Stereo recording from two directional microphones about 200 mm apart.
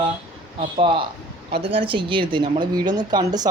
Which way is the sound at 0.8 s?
25° right (ahead or behind).